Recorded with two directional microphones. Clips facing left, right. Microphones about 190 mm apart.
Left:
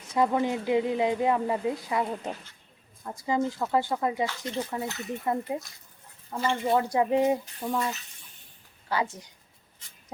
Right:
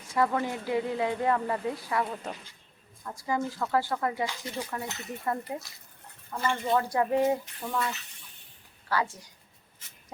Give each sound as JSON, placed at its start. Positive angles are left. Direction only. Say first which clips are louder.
{"t": 0.1, "sound": "speech", "louder": "left 3 dB", "side_deg": 20}
{"t": 8.9, "sound": "speech", "louder": "left 1 dB", "side_deg": 20}